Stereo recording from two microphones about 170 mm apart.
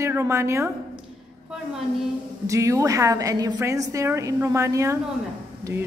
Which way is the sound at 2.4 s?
20° right (ahead or behind).